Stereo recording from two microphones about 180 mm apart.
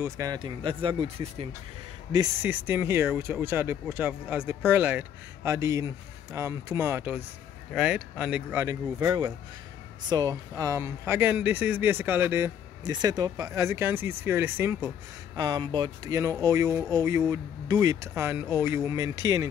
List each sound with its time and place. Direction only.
0.0 s speech: 20° right (ahead or behind)
2.1 s speech: 10° right (ahead or behind)